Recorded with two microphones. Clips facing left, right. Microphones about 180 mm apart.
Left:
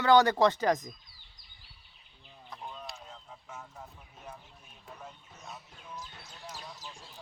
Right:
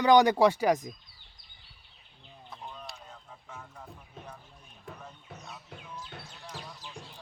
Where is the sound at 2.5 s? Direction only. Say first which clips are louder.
Left 1 dB; centre (ahead or behind).